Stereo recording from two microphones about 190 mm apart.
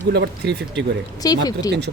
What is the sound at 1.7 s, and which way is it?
Speech, 60° right (ahead or behind).